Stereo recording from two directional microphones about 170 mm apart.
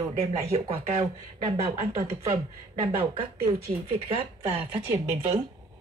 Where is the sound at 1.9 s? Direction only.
15° right (ahead or behind).